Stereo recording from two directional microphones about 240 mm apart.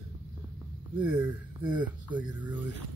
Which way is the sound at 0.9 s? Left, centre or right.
Centre.